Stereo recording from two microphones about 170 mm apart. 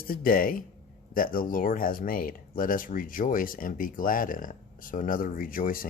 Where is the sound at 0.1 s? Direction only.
55° left (ahead or behind).